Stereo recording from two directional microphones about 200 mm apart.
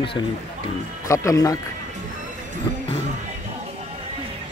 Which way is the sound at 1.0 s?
15° left (ahead or behind).